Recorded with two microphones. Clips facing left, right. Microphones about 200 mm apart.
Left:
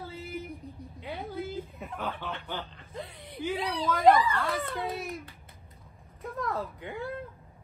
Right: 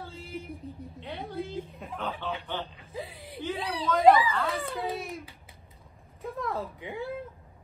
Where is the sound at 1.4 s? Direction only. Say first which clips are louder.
Right 1 dB; 5° left (ahead or behind).